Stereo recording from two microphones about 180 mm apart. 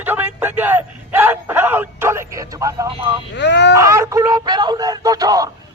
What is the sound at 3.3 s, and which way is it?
Speech, 75° left (ahead or behind).